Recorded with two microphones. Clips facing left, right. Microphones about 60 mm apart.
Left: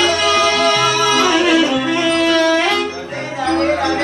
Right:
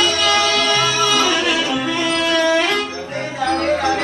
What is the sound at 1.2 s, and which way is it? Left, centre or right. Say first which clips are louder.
Music: left 4 dB; left.